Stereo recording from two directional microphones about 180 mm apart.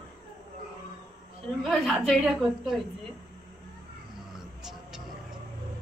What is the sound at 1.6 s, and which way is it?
A man's voice, centre (ahead or behind).